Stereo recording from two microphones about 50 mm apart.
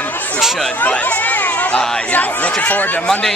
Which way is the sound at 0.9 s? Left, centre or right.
Left.